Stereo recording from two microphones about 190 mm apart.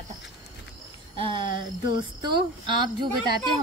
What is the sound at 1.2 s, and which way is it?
Speech, 25° right (ahead or behind).